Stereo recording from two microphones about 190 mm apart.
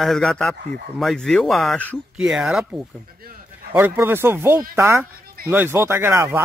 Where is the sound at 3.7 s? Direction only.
10° right (ahead or behind).